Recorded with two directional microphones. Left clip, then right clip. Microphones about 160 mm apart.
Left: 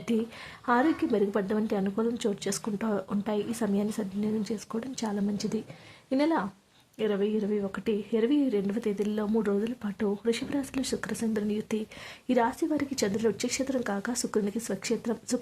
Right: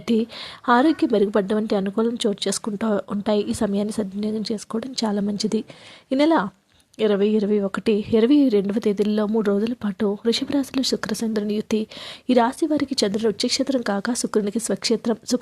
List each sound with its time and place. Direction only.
0.0 s speech: 35° right (ahead or behind)